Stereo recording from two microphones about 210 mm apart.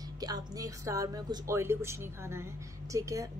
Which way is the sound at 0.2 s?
15° right (ahead or behind).